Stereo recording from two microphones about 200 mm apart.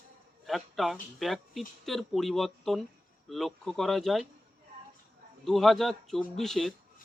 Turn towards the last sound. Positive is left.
turn(degrees=0)  # may be behind; listen again after turning